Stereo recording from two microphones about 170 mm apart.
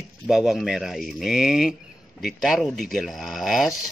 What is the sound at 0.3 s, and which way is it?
Speech, 5° right (ahead or behind).